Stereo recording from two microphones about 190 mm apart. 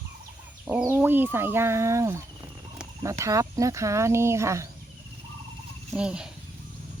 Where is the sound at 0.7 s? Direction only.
10° right (ahead or behind).